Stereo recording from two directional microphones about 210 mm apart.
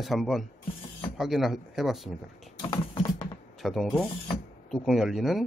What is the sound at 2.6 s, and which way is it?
Typing, 20° left (ahead or behind).